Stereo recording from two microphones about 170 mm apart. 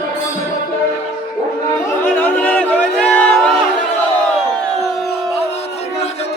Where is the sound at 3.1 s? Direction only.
5° left (ahead or behind).